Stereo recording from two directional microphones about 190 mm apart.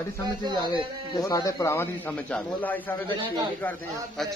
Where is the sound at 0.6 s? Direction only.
20° left (ahead or behind).